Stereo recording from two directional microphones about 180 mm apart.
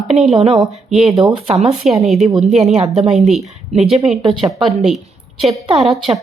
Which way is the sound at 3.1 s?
Centre (ahead or behind).